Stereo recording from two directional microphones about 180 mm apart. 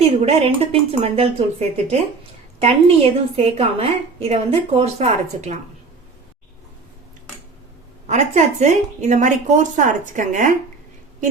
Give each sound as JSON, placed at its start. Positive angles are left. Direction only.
{"t": 0.0, "sound": "a woman's voice", "side_deg": -35}
{"t": 8.0, "sound": "a woman's voice", "side_deg": -40}